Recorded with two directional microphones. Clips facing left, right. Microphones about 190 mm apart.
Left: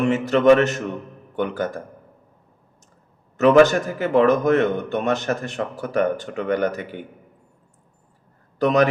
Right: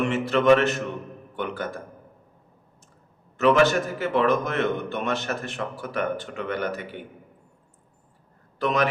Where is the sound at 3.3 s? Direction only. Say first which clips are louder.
Left 5 dB; 45° left (ahead or behind).